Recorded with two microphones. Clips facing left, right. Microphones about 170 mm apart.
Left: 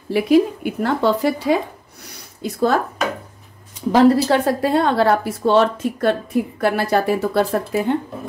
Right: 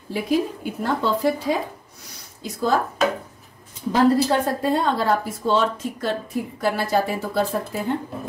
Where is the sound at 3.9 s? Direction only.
80° left.